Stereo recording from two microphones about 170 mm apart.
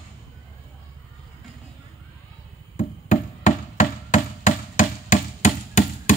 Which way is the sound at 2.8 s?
45° left (ahead or behind).